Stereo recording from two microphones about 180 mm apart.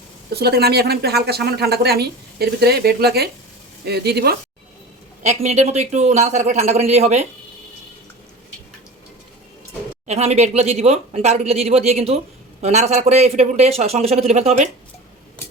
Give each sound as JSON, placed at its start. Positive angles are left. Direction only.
{"t": 0.3, "sound": "speech", "side_deg": -60}
{"t": 5.2, "sound": "speech", "side_deg": -40}
{"t": 10.1, "sound": "speech", "side_deg": -35}
{"t": 15.4, "sound": "a sound", "side_deg": 10}